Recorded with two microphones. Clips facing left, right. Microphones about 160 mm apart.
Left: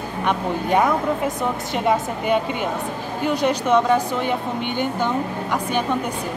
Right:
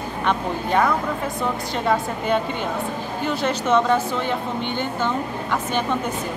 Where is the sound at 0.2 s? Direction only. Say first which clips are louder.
Left 1 dB; 15° left (ahead or behind).